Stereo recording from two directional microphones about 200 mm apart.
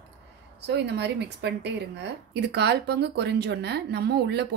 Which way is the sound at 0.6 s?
60° right (ahead or behind).